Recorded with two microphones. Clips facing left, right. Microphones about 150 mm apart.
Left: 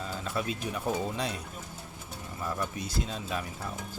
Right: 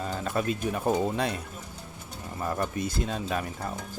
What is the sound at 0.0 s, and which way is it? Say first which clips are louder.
Speech: right 4 dB; 50° right (ahead or behind).